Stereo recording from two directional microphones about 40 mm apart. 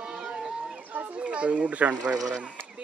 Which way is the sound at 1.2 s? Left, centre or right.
Right.